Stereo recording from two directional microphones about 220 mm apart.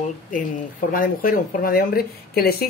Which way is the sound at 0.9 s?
40° left (ahead or behind).